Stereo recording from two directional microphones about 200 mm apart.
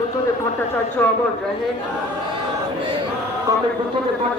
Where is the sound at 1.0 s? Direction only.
10° left (ahead or behind).